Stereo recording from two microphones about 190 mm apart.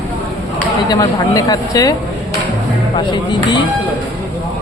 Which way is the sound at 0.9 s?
20° left (ahead or behind).